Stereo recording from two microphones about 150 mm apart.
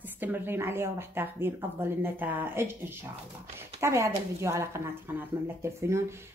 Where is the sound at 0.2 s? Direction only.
15° right (ahead or behind).